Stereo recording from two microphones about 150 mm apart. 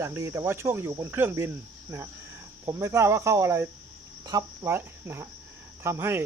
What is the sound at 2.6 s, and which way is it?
Speech, 20° right (ahead or behind).